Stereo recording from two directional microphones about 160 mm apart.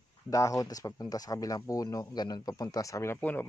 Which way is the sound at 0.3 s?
20° left (ahead or behind).